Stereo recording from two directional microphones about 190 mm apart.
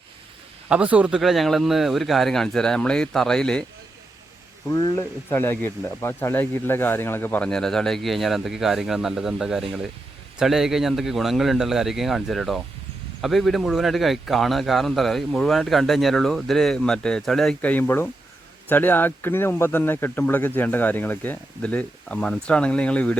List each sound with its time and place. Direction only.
0.7 s speech: 5° right (ahead or behind)
4.7 s speech: 20° left (ahead or behind)